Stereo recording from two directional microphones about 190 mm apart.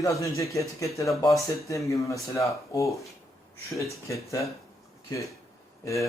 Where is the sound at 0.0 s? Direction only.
15° left (ahead or behind).